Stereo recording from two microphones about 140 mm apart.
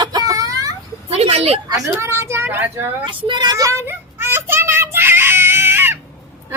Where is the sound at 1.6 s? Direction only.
25° right (ahead or behind).